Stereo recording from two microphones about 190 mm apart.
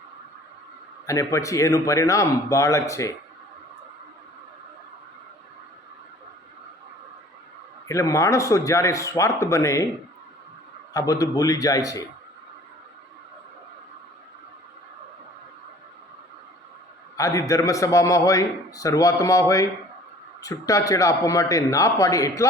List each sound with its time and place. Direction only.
1.0 s a man's voice: 15° left (ahead or behind)
7.9 s a man's voice: 15° left (ahead or behind)
10.9 s a man's voice: 15° left (ahead or behind)
17.2 s a man's voice: 15° left (ahead or behind)